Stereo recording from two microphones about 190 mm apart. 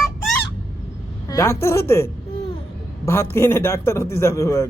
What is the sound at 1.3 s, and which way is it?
A man's voice, 15° left (ahead or behind).